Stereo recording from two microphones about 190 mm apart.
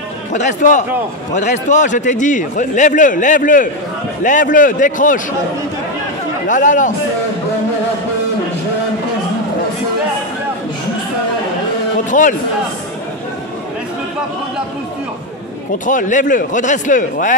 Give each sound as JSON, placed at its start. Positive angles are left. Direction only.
{"t": 0.3, "sound": "a man's voice", "side_deg": 40}
{"t": 6.4, "sound": "a man's voice", "side_deg": 40}
{"t": 12.1, "sound": "a man's voice", "side_deg": 40}
{"t": 15.8, "sound": "a man's voice", "side_deg": 40}